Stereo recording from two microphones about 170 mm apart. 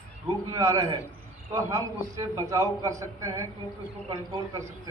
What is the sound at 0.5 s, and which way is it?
A man's voice, 20° right (ahead or behind).